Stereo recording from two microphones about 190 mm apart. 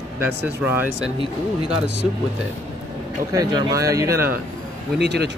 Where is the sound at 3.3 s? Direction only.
20° right (ahead or behind).